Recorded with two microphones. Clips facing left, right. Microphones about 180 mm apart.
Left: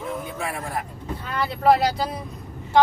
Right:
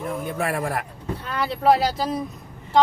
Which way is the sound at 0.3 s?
65° right (ahead or behind).